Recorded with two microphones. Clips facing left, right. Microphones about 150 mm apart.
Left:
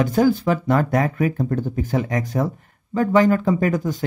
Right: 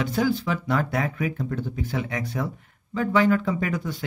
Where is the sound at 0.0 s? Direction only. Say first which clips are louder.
Left 6 dB; 45° left (ahead or behind).